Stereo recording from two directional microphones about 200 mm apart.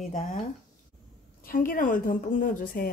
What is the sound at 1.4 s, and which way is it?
A woman's voice, 45° left (ahead or behind).